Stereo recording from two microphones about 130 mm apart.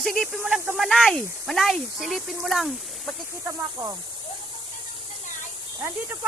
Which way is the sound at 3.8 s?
40° right (ahead or behind).